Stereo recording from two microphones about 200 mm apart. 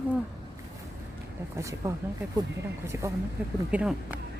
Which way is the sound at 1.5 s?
15° right (ahead or behind).